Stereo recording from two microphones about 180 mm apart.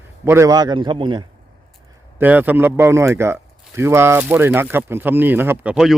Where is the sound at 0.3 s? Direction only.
15° right (ahead or behind).